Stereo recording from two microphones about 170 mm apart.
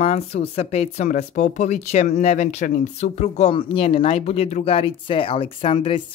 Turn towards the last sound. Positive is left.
turn(degrees=30)  # may be behind; listen again after turning